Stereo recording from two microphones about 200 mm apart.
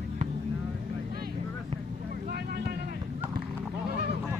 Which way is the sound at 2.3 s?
55° right (ahead or behind).